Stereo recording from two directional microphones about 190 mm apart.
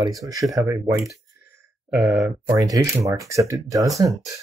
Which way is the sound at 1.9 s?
10° right (ahead or behind).